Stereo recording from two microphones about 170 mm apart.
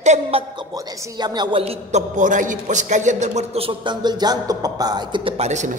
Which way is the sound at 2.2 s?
50° right (ahead or behind).